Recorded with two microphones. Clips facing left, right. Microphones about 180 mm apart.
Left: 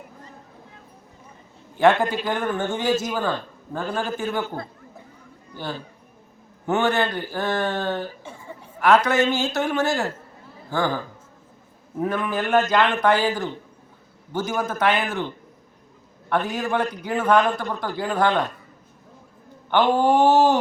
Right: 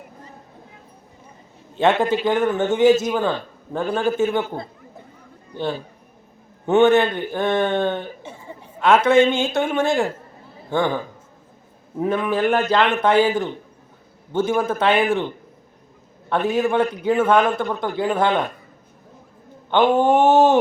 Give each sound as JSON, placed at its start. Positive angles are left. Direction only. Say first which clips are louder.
{"t": 1.7, "sound": "a man's voice", "louder": "even", "side_deg": -25}
{"t": 6.7, "sound": "a man's voice", "louder": "right 7 dB", "side_deg": -20}
{"t": 16.3, "sound": "a man's voice", "louder": "right 4 dB", "side_deg": -25}
{"t": 19.7, "sound": "a man's voice", "louder": "right 2 dB", "side_deg": -20}